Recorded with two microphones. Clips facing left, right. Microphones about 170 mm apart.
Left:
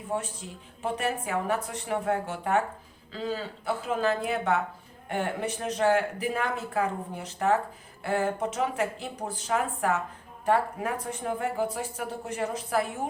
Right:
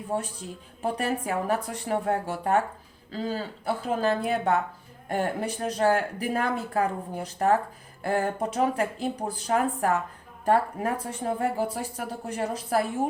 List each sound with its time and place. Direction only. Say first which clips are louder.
0.8 s speech: right 2 dB; 35° right (ahead or behind)